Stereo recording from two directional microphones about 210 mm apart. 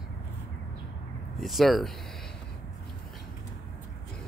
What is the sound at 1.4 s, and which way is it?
Speech, centre (ahead or behind).